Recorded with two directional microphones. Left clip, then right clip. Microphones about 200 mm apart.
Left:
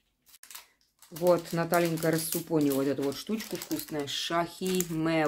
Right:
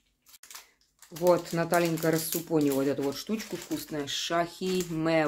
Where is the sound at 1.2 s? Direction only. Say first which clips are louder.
Right 1 dB; centre (ahead or behind).